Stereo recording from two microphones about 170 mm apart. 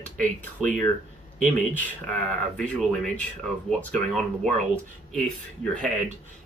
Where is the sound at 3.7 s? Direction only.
Centre (ahead or behind).